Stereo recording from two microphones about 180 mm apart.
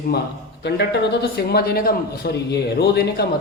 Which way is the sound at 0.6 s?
65° left (ahead or behind).